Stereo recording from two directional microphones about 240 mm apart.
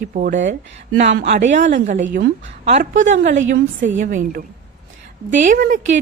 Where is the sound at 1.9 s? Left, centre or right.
Right.